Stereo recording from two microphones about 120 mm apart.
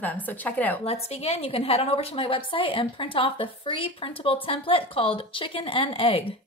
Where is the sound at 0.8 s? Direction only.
55° left (ahead or behind).